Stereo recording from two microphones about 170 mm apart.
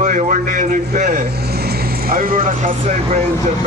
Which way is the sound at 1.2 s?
70° right (ahead or behind).